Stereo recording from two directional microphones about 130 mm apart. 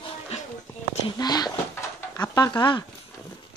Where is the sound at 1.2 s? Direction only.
30° left (ahead or behind).